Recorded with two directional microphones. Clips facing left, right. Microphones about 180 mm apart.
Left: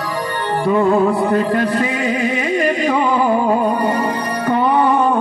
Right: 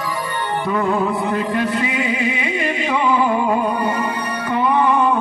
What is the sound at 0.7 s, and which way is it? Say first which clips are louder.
Music: left 5 dB; 40° left (ahead or behind).